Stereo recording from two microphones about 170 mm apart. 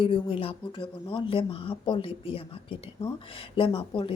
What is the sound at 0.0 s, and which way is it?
Speech, 35° left (ahead or behind).